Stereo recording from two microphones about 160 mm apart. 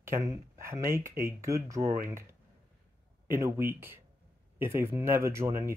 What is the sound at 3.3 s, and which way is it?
Speech, 15° right (ahead or behind).